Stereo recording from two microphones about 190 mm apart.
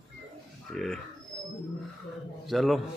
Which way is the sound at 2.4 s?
Centre (ahead or behind).